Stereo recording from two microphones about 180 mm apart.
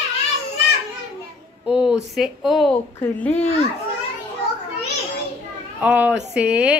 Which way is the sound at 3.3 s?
40° left (ahead or behind).